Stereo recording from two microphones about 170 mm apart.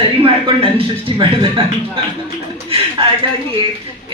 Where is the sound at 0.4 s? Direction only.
30° right (ahead or behind).